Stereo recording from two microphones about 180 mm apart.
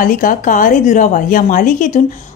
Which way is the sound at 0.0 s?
50° left (ahead or behind).